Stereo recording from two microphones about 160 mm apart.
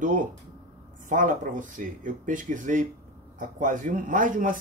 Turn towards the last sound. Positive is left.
turn(degrees=-55)  # may be behind; listen again after turning